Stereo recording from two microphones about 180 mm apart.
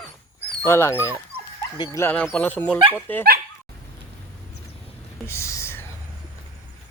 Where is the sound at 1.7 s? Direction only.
25° left (ahead or behind).